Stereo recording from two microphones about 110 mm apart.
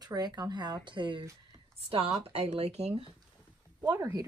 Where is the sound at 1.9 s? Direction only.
60° right (ahead or behind).